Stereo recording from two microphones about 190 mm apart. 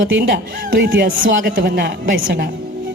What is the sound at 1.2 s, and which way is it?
Speech, 80° right.